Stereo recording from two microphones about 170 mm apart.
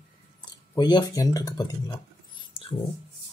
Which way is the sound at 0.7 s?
25° left (ahead or behind).